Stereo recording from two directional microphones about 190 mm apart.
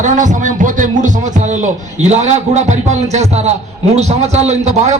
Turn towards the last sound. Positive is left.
turn(degrees=-35)  # may be behind; listen again after turning